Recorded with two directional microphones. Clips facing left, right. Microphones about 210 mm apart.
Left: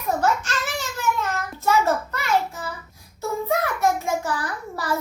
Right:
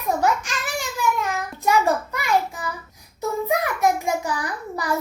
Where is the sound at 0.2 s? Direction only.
15° right (ahead or behind).